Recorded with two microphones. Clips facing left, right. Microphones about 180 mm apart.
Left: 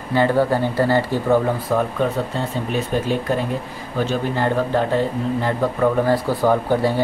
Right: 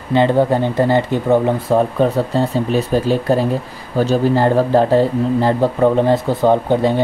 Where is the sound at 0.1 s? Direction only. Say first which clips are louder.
Right 4 dB; 20° right (ahead or behind).